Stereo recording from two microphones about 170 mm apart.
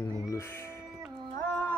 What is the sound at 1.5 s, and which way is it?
Music, 10° left (ahead or behind).